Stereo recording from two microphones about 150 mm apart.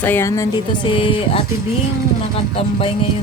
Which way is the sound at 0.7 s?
35° left (ahead or behind).